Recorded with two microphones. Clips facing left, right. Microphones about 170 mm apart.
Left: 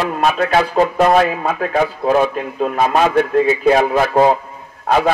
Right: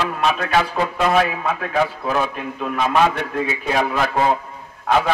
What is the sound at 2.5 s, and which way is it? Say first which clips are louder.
Speech: left 3 dB; 50° left (ahead or behind).